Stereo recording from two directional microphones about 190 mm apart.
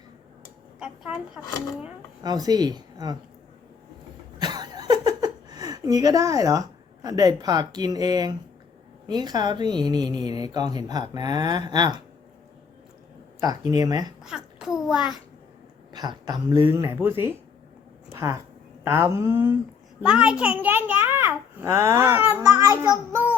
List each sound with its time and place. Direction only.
2.2 s speech: 20° right (ahead or behind)
4.4 s a sound: 20° right (ahead or behind)
9.0 s speech: 20° right (ahead or behind)
13.4 s speech: 20° right (ahead or behind)
14.3 s a child's voice: 5° right (ahead or behind)
15.9 s a child's voice: 20° right (ahead or behind)
18.1 s a sound: 15° right (ahead or behind)
18.9 s a child's voice: 15° right (ahead or behind)